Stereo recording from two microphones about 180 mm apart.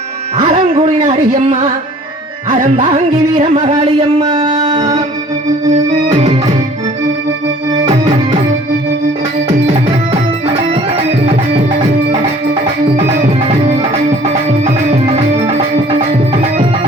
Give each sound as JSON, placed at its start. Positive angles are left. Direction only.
{"t": 0.3, "sound": "speech", "side_deg": -35}
{"t": 3.5, "sound": "a man's voice", "side_deg": -30}
{"t": 10.1, "sound": "music", "side_deg": -35}
{"t": 14.6, "sound": "music", "side_deg": -40}